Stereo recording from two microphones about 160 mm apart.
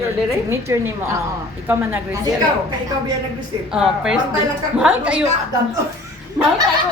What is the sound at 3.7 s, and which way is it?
A woman's voice, 5° right (ahead or behind).